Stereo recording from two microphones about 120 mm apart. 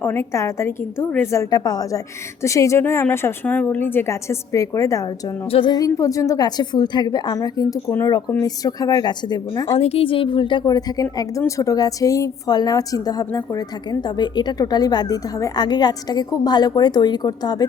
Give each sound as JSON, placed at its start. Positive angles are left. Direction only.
{"t": 0.0, "sound": "a woman's voice", "side_deg": 20}
{"t": 5.5, "sound": "a woman's voice", "side_deg": 50}
{"t": 5.7, "sound": "speech", "side_deg": 30}
{"t": 7.9, "sound": "a woman's voice", "side_deg": 20}
{"t": 8.4, "sound": "speech", "side_deg": 30}
{"t": 9.7, "sound": "speech", "side_deg": 60}